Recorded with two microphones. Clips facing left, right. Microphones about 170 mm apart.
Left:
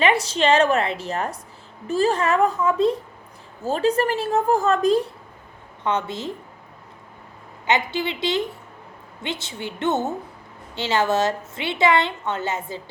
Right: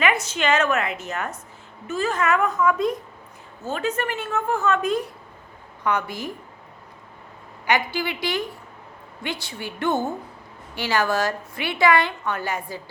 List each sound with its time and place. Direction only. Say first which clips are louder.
0.0 s a woman's voice: left 3 dB; 30° left (ahead or behind)
7.7 s a woman's voice: left 1 dB; 20° left (ahead or behind)